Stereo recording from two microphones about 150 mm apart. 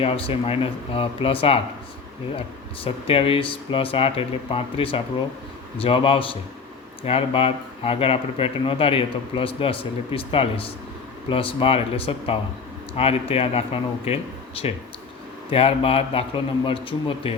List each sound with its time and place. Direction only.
0.0 s speech: 40° left (ahead or behind)
2.8 s speech: 40° left (ahead or behind)